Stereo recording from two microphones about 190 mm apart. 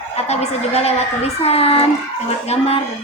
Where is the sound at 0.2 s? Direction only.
35° left (ahead or behind).